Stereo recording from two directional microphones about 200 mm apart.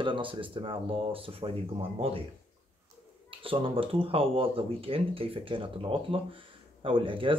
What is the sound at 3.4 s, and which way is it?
Speech, 25° right (ahead or behind).